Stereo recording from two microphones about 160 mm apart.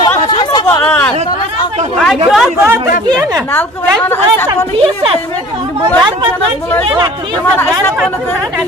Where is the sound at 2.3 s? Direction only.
5° right (ahead or behind).